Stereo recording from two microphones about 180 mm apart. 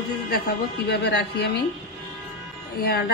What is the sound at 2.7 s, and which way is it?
Speech, 60° left (ahead or behind).